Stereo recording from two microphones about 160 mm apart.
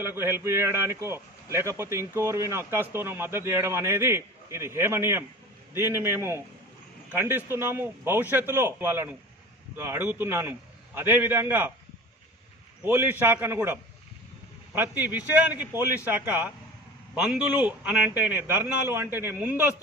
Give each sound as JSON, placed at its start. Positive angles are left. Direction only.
{"t": 0.0, "sound": "a man's voice", "side_deg": -15}
{"t": 12.8, "sound": "a man's voice", "side_deg": -15}